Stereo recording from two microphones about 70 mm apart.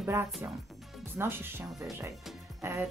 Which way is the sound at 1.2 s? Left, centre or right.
Right.